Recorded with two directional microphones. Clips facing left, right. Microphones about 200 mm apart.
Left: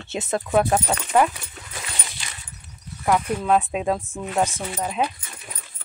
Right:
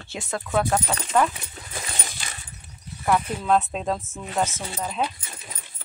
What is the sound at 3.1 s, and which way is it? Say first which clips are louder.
Speech: left 2 dB; 10° left (ahead or behind).